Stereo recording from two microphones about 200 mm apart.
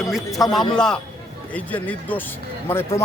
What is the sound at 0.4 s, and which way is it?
A man's voice, centre (ahead or behind).